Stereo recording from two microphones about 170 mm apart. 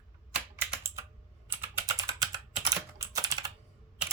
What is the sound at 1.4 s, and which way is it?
Typing, 15° right (ahead or behind).